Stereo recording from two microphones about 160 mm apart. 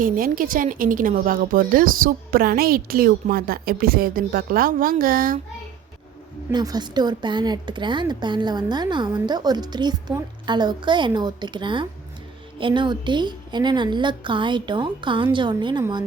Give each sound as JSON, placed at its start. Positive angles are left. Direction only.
{"t": 0.0, "sound": "a woman's voice", "side_deg": -60}
{"t": 6.5, "sound": "speech", "side_deg": -25}